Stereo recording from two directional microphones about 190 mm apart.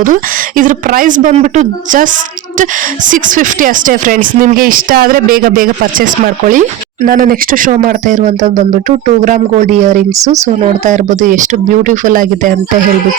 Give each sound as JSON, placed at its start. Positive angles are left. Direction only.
{"t": 0.0, "sound": "speech", "side_deg": -45}
{"t": 10.1, "sound": "speech", "side_deg": -15}
{"t": 10.6, "sound": "speech", "side_deg": -40}